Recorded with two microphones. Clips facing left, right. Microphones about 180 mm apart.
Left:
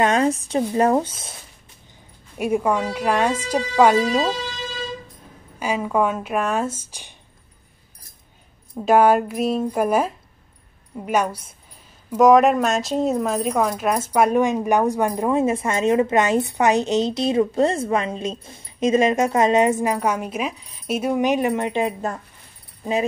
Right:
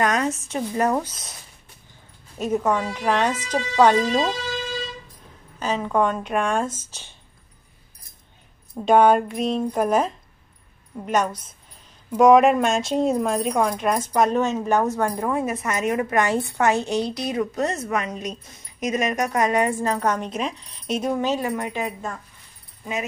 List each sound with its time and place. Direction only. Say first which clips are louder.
0.0 s speech: left 4 dB; 30° left (ahead or behind)
2.3 s speech: left 2 dB; 10° left (ahead or behind)
5.6 s speech: left 1 dB; 10° left (ahead or behind)
8.7 s speech: left 1 dB; 5° left (ahead or behind); by 22.2 s 35° left (ahead or behind)